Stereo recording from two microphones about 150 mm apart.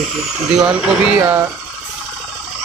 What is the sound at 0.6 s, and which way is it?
Speech, 5° right (ahead or behind).